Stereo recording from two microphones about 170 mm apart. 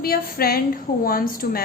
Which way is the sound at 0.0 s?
60° left (ahead or behind).